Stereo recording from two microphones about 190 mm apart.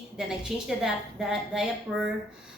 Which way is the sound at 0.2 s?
Centre (ahead or behind).